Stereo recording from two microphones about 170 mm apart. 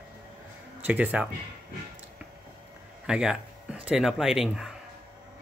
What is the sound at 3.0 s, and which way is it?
Speech, 5° right (ahead or behind).